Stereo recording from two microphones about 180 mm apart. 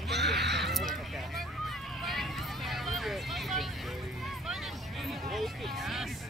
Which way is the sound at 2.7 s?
Centre (ahead or behind).